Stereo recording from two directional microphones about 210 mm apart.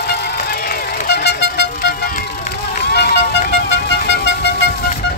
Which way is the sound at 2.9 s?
50° left (ahead or behind).